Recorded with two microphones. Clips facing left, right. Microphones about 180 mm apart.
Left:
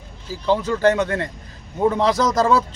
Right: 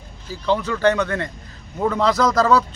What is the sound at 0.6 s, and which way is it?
A man's voice, 30° left (ahead or behind).